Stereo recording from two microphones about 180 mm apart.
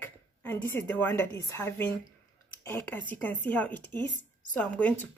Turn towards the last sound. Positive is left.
turn(degrees=10)  # may be behind; listen again after turning